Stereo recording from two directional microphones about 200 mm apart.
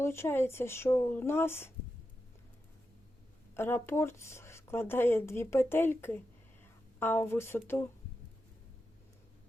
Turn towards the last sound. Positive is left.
turn(degrees=10)  # may be behind; listen again after turning